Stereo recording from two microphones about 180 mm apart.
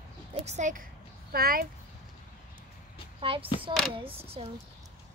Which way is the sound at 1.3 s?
55° right (ahead or behind).